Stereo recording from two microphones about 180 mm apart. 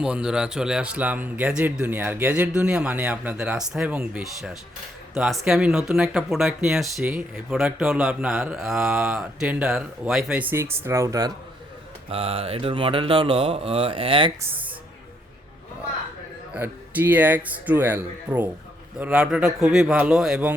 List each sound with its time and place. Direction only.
0.0 s a man's voice: 5° right (ahead or behind)
12.1 s speech: 30° right (ahead or behind)
16.6 s a man's voice: 10° right (ahead or behind)